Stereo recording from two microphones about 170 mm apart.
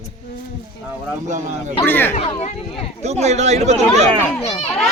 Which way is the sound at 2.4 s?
35° left (ahead or behind).